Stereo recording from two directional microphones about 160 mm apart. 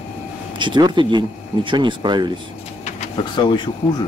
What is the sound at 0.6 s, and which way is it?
Speech, 30° right (ahead or behind).